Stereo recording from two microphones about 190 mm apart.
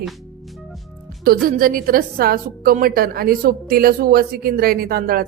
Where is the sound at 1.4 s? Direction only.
50° right (ahead or behind).